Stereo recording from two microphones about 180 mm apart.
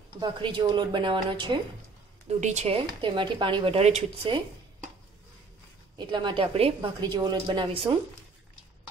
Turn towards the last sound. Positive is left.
turn(degrees=-30)  # may be behind; listen again after turning